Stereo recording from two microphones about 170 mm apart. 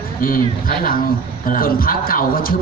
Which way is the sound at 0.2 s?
55° left (ahead or behind).